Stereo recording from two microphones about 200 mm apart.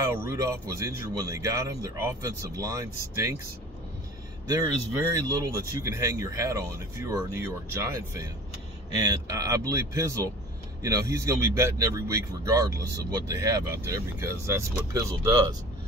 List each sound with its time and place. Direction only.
0.0 s speech: 15° right (ahead or behind)
5.1 s speech: 15° right (ahead or behind)
9.3 s speech: 15° right (ahead or behind)